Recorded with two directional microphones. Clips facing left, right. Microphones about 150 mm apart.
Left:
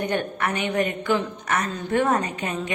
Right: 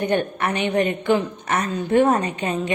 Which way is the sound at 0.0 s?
25° right (ahead or behind).